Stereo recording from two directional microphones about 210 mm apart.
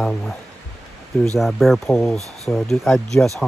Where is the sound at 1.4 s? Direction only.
Centre (ahead or behind).